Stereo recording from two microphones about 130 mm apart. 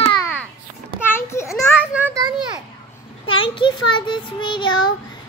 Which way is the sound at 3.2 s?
40° left (ahead or behind).